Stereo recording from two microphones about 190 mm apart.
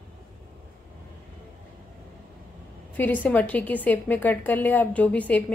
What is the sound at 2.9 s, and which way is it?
A woman's voice, 10° left (ahead or behind).